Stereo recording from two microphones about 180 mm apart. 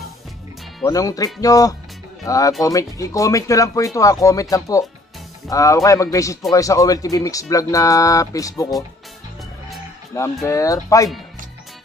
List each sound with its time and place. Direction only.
0.8 s speech: 20° left (ahead or behind)
10.1 s speech: 15° left (ahead or behind)